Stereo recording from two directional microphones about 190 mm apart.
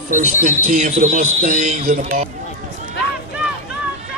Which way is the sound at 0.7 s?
40° right (ahead or behind).